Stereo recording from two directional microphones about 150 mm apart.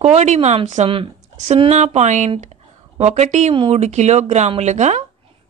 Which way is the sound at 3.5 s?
40° right (ahead or behind).